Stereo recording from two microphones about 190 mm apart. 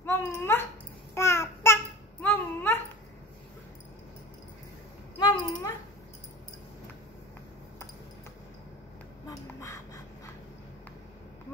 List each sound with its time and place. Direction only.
0.0 s dog: 15° left (ahead or behind)
1.1 s babbling: 15° left (ahead or behind)
5.2 s a sound: 20° left (ahead or behind)
9.3 s duck: 15° left (ahead or behind)